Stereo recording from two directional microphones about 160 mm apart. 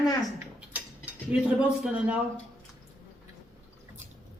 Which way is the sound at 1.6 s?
5° right (ahead or behind).